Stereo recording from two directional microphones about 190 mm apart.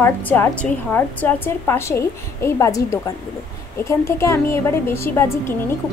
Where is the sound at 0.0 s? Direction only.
10° left (ahead or behind).